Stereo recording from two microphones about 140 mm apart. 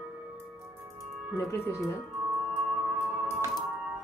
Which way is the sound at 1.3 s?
20° left (ahead or behind).